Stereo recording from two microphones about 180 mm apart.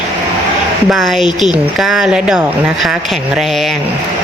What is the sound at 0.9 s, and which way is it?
A woman's voice, centre (ahead or behind).